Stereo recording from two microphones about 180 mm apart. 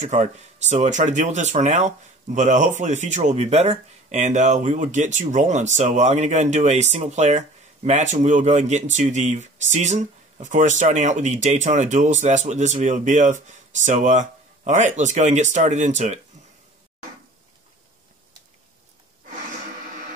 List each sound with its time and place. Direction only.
0.0 s speech: 40° right (ahead or behind)